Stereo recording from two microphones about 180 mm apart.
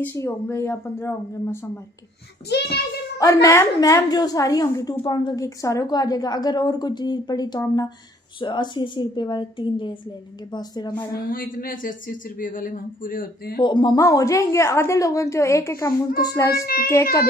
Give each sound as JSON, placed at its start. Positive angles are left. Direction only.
{"t": 0.0, "sound": "a woman's voice", "side_deg": 15}
{"t": 2.5, "sound": "a child's voice", "side_deg": 70}
{"t": 3.4, "sound": "a woman's voice", "side_deg": 15}
{"t": 11.2, "sound": "speech", "side_deg": 50}
{"t": 13.6, "sound": "a woman's voice", "side_deg": 25}
{"t": 16.5, "sound": "a child's voice", "side_deg": 55}